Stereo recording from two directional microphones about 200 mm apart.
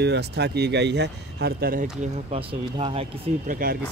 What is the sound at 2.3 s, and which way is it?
Speech, 30° right (ahead or behind).